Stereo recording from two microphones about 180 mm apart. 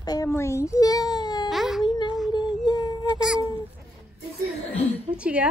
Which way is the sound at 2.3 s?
25° left (ahead or behind).